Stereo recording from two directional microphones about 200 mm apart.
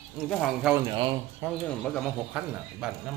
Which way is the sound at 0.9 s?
25° right (ahead or behind).